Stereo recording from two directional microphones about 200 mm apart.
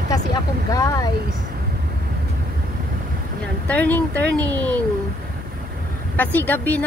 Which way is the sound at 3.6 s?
5° left (ahead or behind).